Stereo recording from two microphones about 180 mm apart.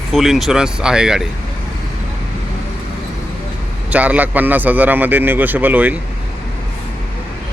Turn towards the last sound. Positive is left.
turn(degrees=-10)  # may be behind; listen again after turning